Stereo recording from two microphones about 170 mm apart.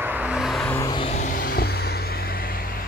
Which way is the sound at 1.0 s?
50° left (ahead or behind).